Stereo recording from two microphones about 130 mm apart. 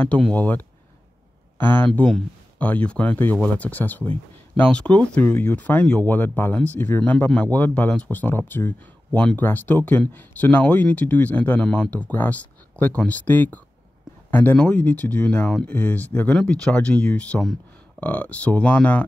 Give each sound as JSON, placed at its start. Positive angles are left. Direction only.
{"t": 0.0, "sound": "speech", "side_deg": 10}
{"t": 1.9, "sound": "speech", "side_deg": 0}